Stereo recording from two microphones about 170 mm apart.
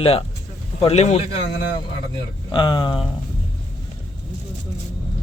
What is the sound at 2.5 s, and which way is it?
Speech, 25° left (ahead or behind).